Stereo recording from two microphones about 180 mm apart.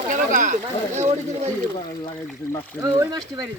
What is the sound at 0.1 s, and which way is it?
Speech, 45° right (ahead or behind).